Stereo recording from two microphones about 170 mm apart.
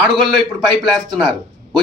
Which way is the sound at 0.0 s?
Centre (ahead or behind).